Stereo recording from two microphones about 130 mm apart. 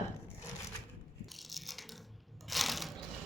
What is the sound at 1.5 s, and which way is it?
Coin, centre (ahead or behind).